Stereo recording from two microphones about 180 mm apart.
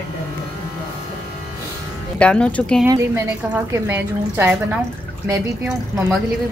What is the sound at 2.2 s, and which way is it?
Speech, 5° left (ahead or behind).